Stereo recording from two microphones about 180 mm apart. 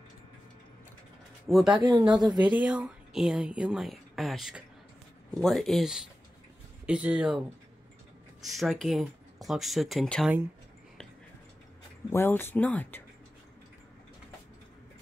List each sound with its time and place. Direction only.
1.5 s a woman's voice: 5° right (ahead or behind)
1.8 s speech: 25° right (ahead or behind)
2.4 s a woman's voice: 5° right (ahead or behind)
8.5 s a woman's voice: centre (ahead or behind)
12.1 s speech: 15° left (ahead or behind)